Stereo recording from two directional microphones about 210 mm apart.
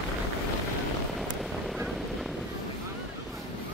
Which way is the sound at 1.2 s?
Centre (ahead or behind).